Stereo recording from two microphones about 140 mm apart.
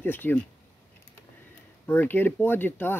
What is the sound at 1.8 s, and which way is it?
Speech, 15° left (ahead or behind).